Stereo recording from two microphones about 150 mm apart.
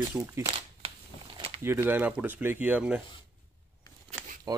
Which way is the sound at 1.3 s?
40° right (ahead or behind).